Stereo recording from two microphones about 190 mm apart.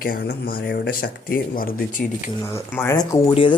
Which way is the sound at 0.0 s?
50° left (ahead or behind).